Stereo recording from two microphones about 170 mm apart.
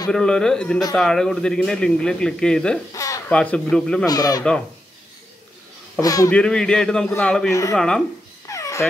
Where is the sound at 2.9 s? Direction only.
20° left (ahead or behind).